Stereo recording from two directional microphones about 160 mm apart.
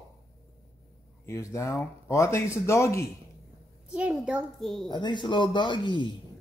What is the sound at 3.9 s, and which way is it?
A child's voice, 5° right (ahead or behind).